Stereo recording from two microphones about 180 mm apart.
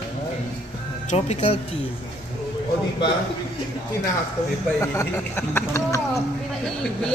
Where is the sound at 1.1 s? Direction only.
35° left (ahead or behind).